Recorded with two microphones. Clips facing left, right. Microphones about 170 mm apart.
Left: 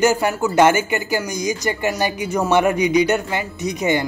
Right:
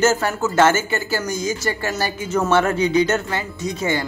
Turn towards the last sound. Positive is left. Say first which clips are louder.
# left 3 dB
turn(degrees=20)  # may be behind; listen again after turning